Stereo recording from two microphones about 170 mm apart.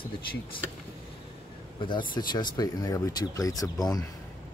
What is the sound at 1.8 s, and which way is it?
Speech, 30° left (ahead or behind).